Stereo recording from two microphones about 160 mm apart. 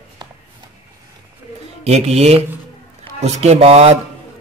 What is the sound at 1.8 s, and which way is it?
A man's voice, 40° right (ahead or behind).